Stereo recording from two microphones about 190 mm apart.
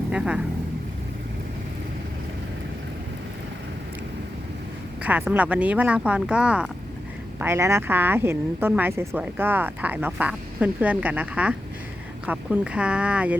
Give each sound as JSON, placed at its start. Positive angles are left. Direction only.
{"t": 0.1, "sound": "speech", "side_deg": -5}
{"t": 5.0, "sound": "speech", "side_deg": -10}